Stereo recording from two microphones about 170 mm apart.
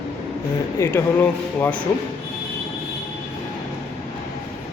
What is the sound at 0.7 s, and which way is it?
Speech, 15° left (ahead or behind).